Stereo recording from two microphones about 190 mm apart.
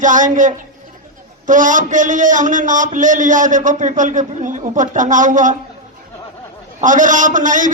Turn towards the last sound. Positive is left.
turn(degrees=-45)  # may be behind; listen again after turning